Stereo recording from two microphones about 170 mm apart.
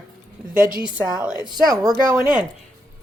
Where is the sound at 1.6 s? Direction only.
20° right (ahead or behind).